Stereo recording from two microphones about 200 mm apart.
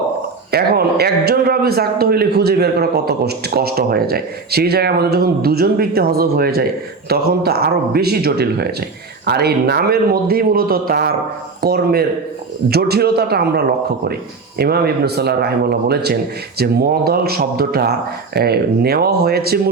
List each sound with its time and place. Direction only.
0.5 s a man's voice: 50° right (ahead or behind)